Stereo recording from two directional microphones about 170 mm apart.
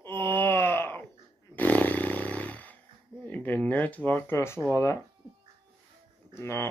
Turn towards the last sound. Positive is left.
turn(degrees=15)  # may be behind; listen again after turning